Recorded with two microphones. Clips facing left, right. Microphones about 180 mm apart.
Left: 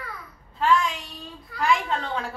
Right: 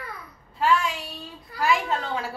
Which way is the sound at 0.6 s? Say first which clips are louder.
Left 1 dB; 5° right (ahead or behind).